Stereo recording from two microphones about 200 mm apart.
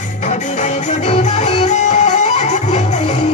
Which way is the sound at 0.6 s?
35° left (ahead or behind).